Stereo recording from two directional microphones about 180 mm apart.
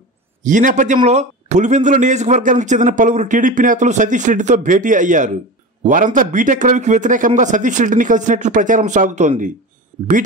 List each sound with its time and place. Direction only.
0.4 s a man's voice: 45° right (ahead or behind)